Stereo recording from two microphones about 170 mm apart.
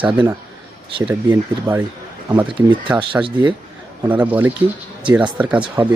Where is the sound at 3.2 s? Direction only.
15° right (ahead or behind).